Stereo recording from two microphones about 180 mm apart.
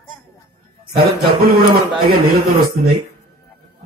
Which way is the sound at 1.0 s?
60° right (ahead or behind).